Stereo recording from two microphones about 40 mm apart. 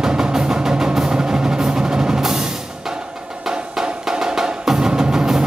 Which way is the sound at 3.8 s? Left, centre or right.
Centre.